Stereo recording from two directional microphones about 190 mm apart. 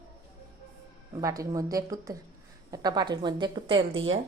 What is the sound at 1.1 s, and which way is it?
Speech, 15° right (ahead or behind).